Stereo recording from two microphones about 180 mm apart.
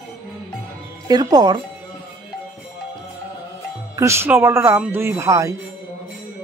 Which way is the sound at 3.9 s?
15° right (ahead or behind).